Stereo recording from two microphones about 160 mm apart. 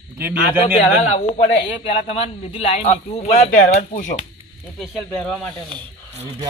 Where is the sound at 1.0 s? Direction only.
40° left (ahead or behind).